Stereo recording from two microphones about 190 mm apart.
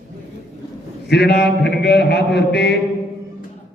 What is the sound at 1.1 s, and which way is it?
A man's voice, 60° left (ahead or behind).